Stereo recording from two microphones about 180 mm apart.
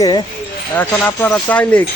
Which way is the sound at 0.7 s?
10° left (ahead or behind).